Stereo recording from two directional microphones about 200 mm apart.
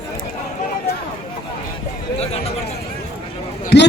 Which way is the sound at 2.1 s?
30° left (ahead or behind).